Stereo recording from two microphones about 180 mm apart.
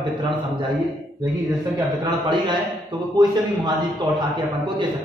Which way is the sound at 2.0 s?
25° right (ahead or behind).